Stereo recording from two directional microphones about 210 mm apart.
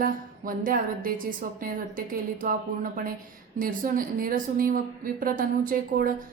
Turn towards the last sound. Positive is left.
turn(degrees=-45)  # may be behind; listen again after turning